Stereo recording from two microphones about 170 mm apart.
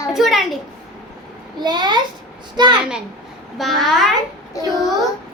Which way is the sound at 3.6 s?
Centre (ahead or behind).